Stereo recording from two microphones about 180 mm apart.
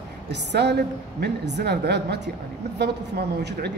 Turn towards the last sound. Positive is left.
turn(degrees=-70)  # may be behind; listen again after turning